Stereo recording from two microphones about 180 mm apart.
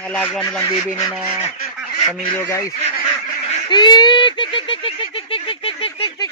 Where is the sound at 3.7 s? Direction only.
25° left (ahead or behind).